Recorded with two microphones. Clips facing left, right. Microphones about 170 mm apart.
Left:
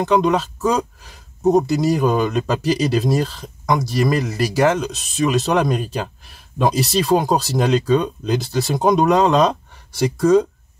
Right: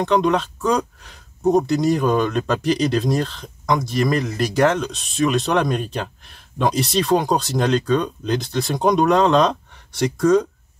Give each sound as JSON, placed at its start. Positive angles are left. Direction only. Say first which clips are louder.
{"t": 0.0, "sound": "speech", "louder": "left 1 dB", "side_deg": 5}
{"t": 1.4, "sound": "speech", "louder": "left 2 dB", "side_deg": 20}
{"t": 1.7, "sound": "speech", "louder": "left 1 dB", "side_deg": 5}